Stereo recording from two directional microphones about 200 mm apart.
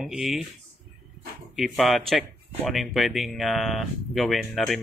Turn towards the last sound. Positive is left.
turn(degrees=0)  # may be behind; listen again after turning